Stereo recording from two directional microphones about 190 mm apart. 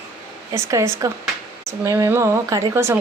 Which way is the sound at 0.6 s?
15° right (ahead or behind).